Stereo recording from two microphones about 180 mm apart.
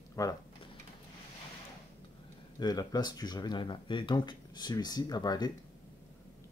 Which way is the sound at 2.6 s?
20° left (ahead or behind).